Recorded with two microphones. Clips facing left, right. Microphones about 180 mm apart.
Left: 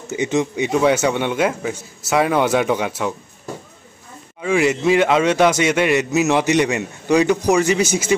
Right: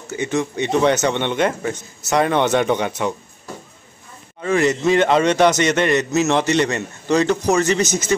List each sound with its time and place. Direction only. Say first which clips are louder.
0.1 s speech: left 2 dB; 20° left (ahead or behind)
0.7 s a man's voice: right 1 dB; 5° left (ahead or behind)
4.4 s a man's voice: even; 10° left (ahead or behind)